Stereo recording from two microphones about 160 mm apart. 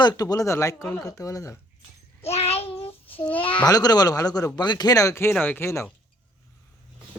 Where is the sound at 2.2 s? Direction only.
40° left (ahead or behind).